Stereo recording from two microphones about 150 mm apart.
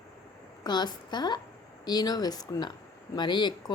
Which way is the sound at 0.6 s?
30° left (ahead or behind).